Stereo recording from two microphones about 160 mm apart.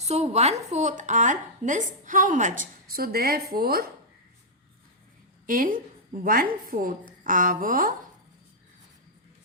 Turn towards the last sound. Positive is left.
turn(degrees=-60)  # may be behind; listen again after turning